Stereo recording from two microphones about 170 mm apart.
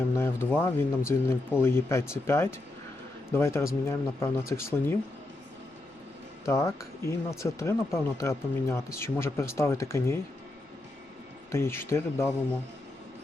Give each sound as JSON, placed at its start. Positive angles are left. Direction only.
{"t": 0.1, "sound": "speech", "side_deg": 15}
{"t": 6.4, "sound": "speech", "side_deg": 15}
{"t": 11.5, "sound": "speech", "side_deg": 15}